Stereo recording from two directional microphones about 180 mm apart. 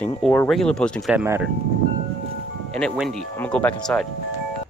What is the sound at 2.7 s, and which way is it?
Speech, centre (ahead or behind).